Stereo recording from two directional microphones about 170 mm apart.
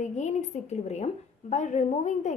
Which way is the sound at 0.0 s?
45° left (ahead or behind).